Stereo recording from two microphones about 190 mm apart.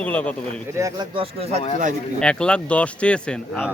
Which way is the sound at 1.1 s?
30° right (ahead or behind).